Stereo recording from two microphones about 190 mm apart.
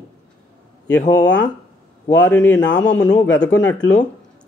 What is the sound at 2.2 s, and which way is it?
Speech, 5° left (ahead or behind).